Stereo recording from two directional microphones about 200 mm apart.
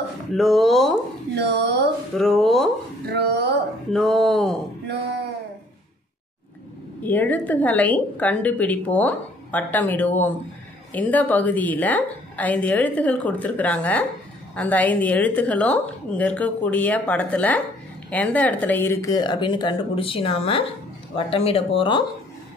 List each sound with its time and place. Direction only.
0.3 s speech: centre (ahead or behind)
1.3 s speech: 60° right (ahead or behind)
2.1 s speech: centre (ahead or behind)
3.1 s speech: 55° right (ahead or behind)
3.9 s speech: centre (ahead or behind)
4.8 s a sound: 55° right (ahead or behind)
7.0 s a woman's voice: 10° left (ahead or behind); by 22.0 s 25° left (ahead or behind)